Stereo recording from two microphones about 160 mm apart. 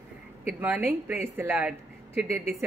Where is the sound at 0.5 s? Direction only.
10° right (ahead or behind).